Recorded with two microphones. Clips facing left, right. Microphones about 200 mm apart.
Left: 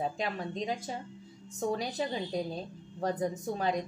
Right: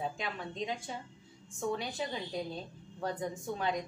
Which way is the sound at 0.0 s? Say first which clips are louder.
Left 4 dB; 40° left (ahead or behind).